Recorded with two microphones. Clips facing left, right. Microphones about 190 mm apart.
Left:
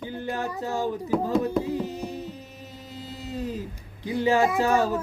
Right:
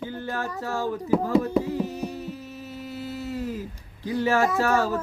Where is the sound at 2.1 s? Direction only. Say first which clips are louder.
Right 1 dB; 20° left (ahead or behind).